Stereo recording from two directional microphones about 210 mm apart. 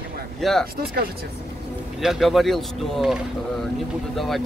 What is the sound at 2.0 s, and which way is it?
Speech, centre (ahead or behind).